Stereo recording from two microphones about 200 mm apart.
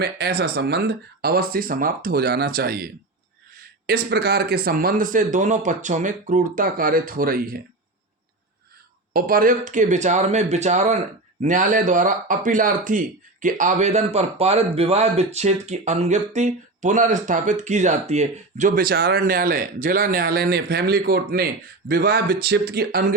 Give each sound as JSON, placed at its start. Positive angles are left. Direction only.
{"t": 0.0, "sound": "speech", "side_deg": -55}
{"t": 9.1, "sound": "speech", "side_deg": -45}